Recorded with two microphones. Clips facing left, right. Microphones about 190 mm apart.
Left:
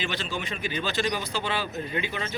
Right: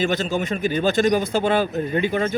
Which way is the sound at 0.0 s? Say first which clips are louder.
Right 10 dB; 45° right (ahead or behind).